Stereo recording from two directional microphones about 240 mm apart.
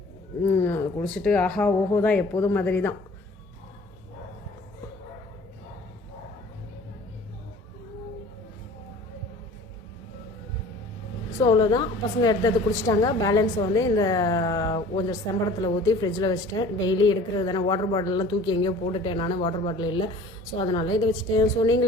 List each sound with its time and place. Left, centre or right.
0.4 s a woman's voice: centre
11.3 s a woman's voice: centre